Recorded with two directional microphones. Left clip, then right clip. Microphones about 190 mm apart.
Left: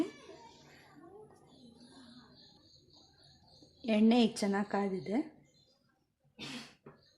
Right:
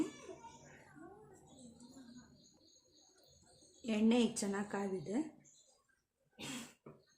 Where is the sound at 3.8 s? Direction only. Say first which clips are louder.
Left 5 dB; 35° left (ahead or behind).